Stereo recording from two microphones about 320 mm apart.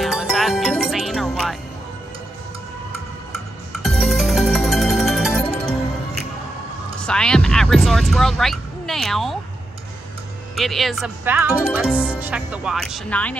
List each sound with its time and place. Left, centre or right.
0.0 s music: centre
3.7 s music: centre
7.0 s heart sounds: centre
10.5 s speech: centre